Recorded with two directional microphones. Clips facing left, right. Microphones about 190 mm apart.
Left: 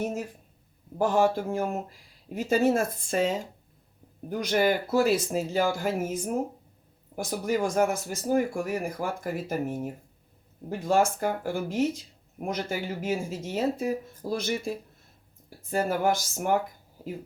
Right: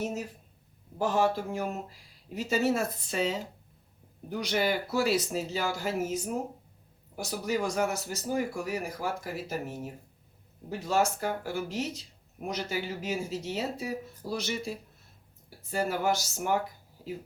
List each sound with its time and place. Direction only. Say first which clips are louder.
0.9 s a man's voice: left 3 dB; 50° left (ahead or behind)
15.7 s a man's voice: left 3 dB; 50° left (ahead or behind)